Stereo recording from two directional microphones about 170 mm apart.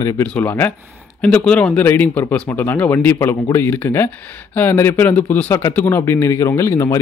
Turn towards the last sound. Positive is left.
turn(degrees=15)  # may be behind; listen again after turning